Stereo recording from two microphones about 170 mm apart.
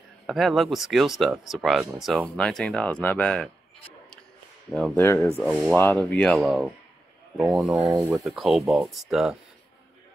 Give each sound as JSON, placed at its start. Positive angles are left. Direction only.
{"t": 0.3, "sound": "speech", "side_deg": 0}
{"t": 4.6, "sound": "speech", "side_deg": 0}
{"t": 4.9, "sound": "speech", "side_deg": 15}
{"t": 5.4, "sound": "speech", "side_deg": 0}